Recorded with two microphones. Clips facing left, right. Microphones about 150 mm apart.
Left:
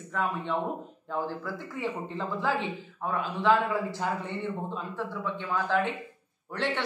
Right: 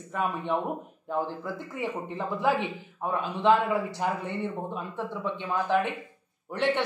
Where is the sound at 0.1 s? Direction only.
15° right (ahead or behind).